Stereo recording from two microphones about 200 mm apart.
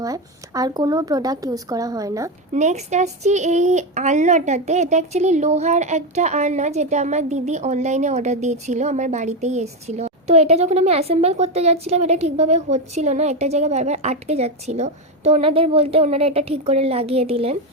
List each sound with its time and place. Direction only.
0.0 s a woman's voice: 15° right (ahead or behind)
2.5 s speech: 35° right (ahead or behind)